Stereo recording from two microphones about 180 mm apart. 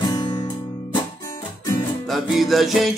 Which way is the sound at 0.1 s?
25° left (ahead or behind).